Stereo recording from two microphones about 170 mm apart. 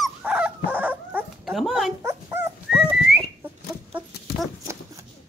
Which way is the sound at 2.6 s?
5° right (ahead or behind).